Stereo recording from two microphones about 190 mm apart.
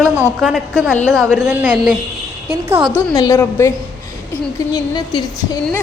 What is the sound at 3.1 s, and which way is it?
Speech, 15° left (ahead or behind).